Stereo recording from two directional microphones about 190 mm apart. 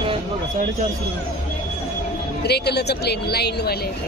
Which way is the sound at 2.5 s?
60° left (ahead or behind).